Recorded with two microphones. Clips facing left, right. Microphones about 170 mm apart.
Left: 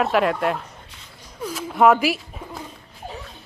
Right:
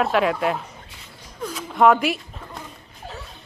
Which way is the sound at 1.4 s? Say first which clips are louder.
Even; centre (ahead or behind).